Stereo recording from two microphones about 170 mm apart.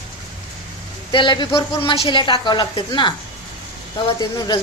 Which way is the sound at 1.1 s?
25° left (ahead or behind).